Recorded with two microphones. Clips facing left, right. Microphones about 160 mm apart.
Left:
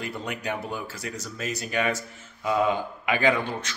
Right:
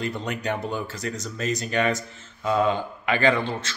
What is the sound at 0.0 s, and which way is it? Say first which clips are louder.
Speech: right 4 dB; 5° left (ahead or behind).